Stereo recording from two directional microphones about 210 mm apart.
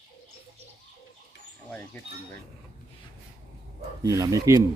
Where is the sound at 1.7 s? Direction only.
10° left (ahead or behind).